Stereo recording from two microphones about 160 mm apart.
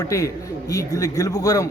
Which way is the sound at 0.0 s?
20° left (ahead or behind).